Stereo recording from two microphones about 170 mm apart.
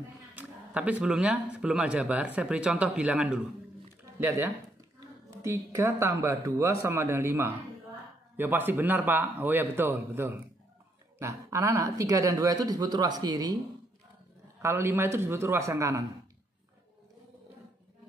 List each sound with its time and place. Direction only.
0.4 s speech: 10° right (ahead or behind)
5.4 s speech: 15° right (ahead or behind)
14.6 s speech: 15° right (ahead or behind)